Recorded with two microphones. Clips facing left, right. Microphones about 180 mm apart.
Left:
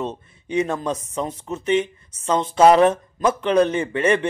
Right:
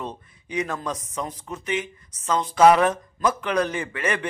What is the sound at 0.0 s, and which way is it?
Speech, 25° left (ahead or behind).